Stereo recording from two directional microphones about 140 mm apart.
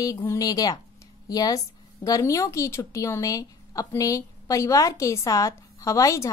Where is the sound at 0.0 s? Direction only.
20° left (ahead or behind).